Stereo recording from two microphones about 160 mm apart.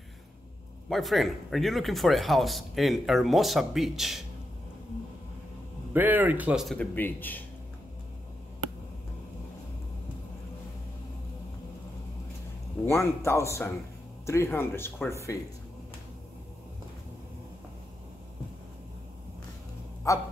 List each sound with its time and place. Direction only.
0.8 s speech: centre (ahead or behind)
5.9 s speech: 10° right (ahead or behind)
7.0 s speech: 10° left (ahead or behind)
12.8 s speech: 15° left (ahead or behind)
20.1 s a sound: 20° left (ahead or behind)